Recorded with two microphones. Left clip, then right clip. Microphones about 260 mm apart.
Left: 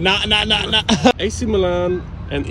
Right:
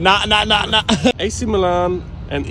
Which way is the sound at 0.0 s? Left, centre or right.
Centre.